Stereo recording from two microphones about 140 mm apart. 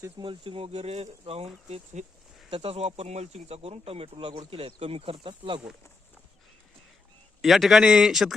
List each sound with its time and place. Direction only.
0.2 s speech: 40° right (ahead or behind); by 2.0 s 55° right (ahead or behind)
2.5 s speech: 45° right (ahead or behind)
7.4 s speech: centre (ahead or behind)